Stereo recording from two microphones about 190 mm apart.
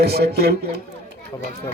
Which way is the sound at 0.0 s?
55° right (ahead or behind).